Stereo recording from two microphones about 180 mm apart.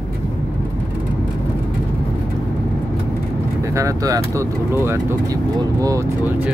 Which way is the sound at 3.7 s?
20° right (ahead or behind).